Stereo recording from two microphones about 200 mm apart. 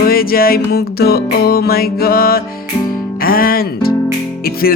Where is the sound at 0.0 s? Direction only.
50° left (ahead or behind).